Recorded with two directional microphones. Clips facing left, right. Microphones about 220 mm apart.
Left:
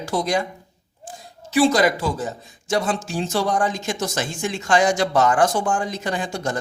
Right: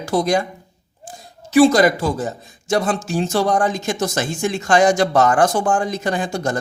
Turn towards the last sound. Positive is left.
turn(degrees=-45)  # may be behind; listen again after turning